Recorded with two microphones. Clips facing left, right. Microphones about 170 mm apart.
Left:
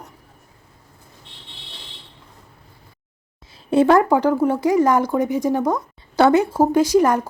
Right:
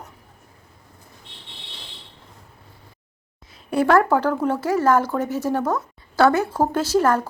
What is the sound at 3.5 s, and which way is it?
Speech, 25° left (ahead or behind).